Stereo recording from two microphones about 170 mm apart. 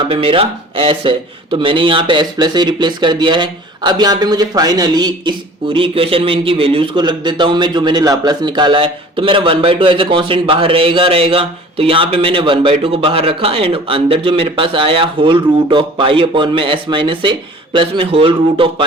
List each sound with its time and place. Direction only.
0.0 s speech: 30° right (ahead or behind)